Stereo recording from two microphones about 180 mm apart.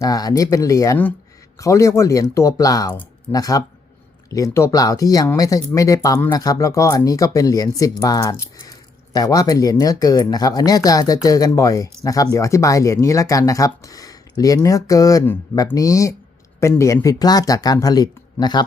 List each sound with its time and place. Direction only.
0.0 s speech: 20° left (ahead or behind)